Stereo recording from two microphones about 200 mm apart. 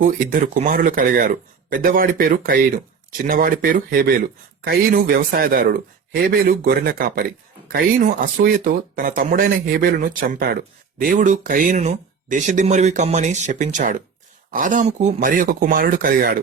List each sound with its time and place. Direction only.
0.0 s speech: 40° right (ahead or behind)